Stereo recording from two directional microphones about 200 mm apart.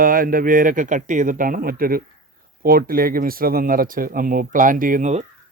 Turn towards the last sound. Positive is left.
turn(degrees=-35)  # may be behind; listen again after turning